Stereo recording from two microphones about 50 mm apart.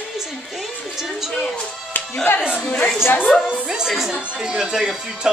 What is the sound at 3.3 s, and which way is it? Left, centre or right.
A woman's voice, centre.